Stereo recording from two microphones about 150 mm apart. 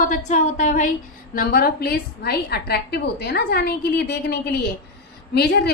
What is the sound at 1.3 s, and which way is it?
A woman's voice, 70° left (ahead or behind).